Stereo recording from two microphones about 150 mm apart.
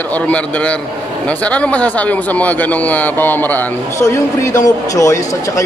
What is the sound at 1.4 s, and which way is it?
A man's voice, 10° left (ahead or behind).